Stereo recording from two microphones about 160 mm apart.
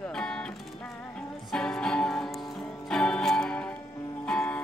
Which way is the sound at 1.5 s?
5° left (ahead or behind).